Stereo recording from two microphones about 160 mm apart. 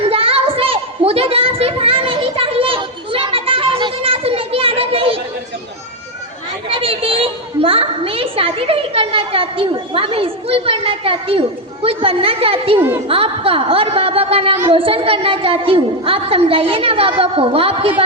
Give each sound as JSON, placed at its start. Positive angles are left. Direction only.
{"t": 0.0, "sound": "a sound", "side_deg": -35}
{"t": 6.7, "sound": "children playing", "side_deg": -35}
{"t": 13.1, "sound": "a woman's voice", "side_deg": -35}